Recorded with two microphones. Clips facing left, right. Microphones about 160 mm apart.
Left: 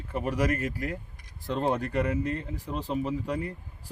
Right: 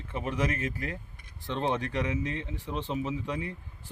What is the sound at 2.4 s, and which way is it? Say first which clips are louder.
Speech: left 2 dB; 40° left (ahead or behind).